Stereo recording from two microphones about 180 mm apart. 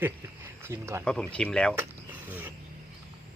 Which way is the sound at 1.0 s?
5° left (ahead or behind).